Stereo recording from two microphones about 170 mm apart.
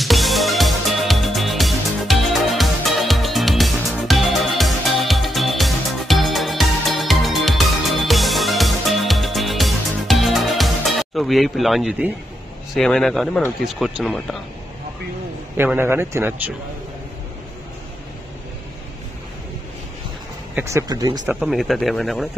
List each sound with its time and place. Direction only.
0.0 s music: centre (ahead or behind)
12.7 s speech: 5° left (ahead or behind)
15.5 s a man's voice: 15° right (ahead or behind)
20.5 s speech: 20° right (ahead or behind)
21.3 s speech: centre (ahead or behind)